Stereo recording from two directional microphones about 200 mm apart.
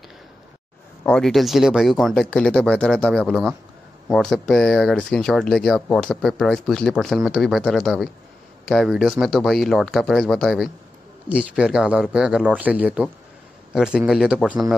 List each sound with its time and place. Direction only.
1.0 s speech: 5° left (ahead or behind)